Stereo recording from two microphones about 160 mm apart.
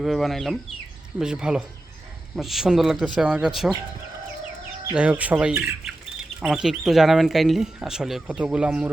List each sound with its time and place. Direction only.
0.0 s speech: centre (ahead or behind)
4.9 s speech: 10° right (ahead or behind)